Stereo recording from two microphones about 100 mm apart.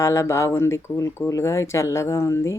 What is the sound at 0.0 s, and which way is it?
Speech, 30° left (ahead or behind).